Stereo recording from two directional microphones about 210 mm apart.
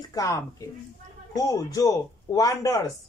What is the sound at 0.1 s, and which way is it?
Speech, 15° left (ahead or behind).